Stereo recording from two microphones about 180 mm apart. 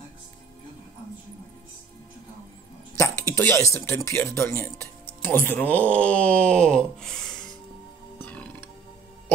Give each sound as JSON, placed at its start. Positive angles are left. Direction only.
{"t": 3.0, "sound": "speech", "side_deg": 15}
{"t": 8.2, "sound": "music", "side_deg": 10}